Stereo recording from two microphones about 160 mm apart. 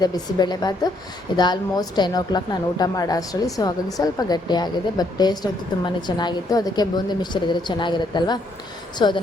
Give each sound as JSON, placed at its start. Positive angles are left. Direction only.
{"t": 0.0, "sound": "a woman's voice", "side_deg": 25}